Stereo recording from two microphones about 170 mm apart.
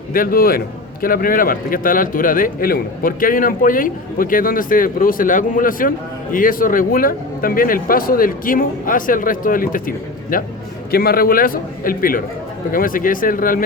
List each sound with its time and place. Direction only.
0.1 s speech: 60° left (ahead or behind)